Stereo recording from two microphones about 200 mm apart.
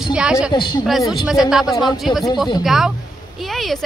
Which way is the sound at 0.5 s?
25° left (ahead or behind).